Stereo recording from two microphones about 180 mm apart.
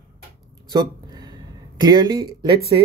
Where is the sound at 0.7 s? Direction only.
25° right (ahead or behind).